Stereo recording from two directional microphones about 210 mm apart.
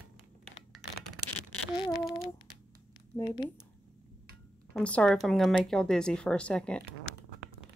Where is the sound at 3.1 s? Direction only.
20° left (ahead or behind).